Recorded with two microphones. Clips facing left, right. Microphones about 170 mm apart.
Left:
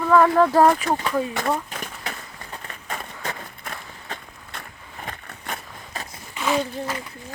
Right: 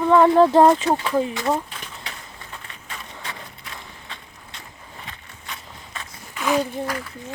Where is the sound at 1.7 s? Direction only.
45° left (ahead or behind).